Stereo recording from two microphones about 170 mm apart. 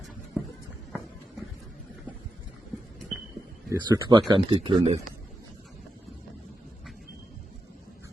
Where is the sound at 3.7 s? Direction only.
15° right (ahead or behind).